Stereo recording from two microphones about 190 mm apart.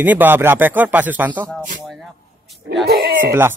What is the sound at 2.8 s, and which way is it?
Speech, 55° right (ahead or behind).